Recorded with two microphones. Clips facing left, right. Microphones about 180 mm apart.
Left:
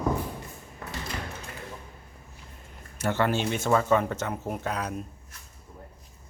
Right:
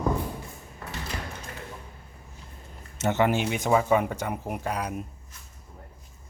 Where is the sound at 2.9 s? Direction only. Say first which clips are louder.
Right 2 dB; 20° right (ahead or behind).